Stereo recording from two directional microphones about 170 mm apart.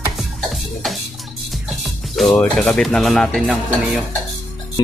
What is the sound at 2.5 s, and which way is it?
Speech, centre (ahead or behind).